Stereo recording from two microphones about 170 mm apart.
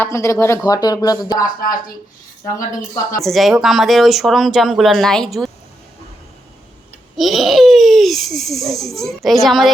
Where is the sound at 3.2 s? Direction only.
Centre (ahead or behind).